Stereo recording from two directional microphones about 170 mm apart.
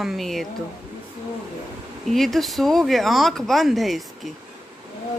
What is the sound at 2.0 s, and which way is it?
Speech, centre (ahead or behind).